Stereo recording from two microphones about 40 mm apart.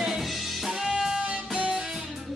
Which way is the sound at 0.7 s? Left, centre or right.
Centre.